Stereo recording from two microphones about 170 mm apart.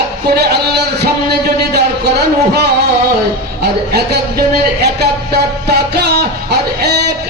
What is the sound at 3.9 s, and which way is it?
A man's voice, 70° right (ahead or behind).